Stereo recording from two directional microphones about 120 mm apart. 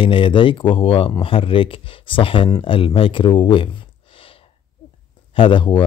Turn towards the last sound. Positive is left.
turn(degrees=45)  # may be behind; listen again after turning